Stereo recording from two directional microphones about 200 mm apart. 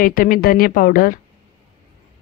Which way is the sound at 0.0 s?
45° left (ahead or behind).